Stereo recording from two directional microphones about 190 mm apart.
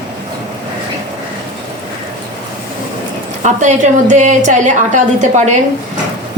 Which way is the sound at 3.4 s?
40° right (ahead or behind).